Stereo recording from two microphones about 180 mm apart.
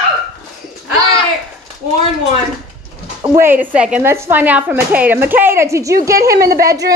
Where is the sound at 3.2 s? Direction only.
15° right (ahead or behind).